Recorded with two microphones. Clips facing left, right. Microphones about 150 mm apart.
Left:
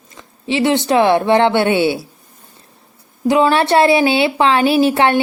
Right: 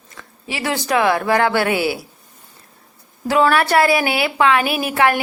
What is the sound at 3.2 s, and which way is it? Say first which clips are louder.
A woman's voice: left 3 dB; 20° left (ahead or behind).